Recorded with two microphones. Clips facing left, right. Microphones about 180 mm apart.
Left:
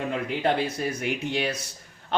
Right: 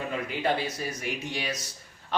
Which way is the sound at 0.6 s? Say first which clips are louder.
Left 5 dB; 60° left (ahead or behind).